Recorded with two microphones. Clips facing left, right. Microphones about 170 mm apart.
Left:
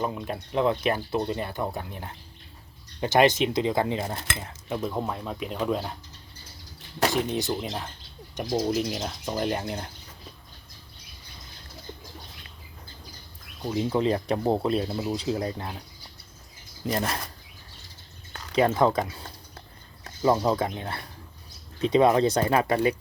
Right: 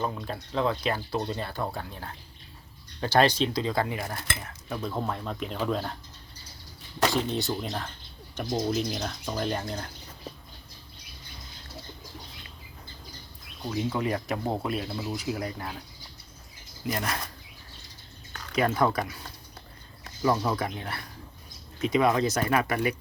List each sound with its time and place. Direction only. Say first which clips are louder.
0.0 s speech: left 2 dB; 15° left (ahead or behind)
7.1 s speech: left 2 dB; 15° left (ahead or behind)
13.7 s speech: left 4 dB; 25° left (ahead or behind)
16.9 s speech: left 3 dB; 30° left (ahead or behind)
18.5 s speech: left 3 dB; 25° left (ahead or behind)
20.2 s speech: left 3 dB; 25° left (ahead or behind)